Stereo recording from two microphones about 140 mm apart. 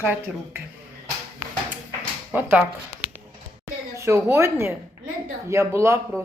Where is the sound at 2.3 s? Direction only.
10° right (ahead or behind).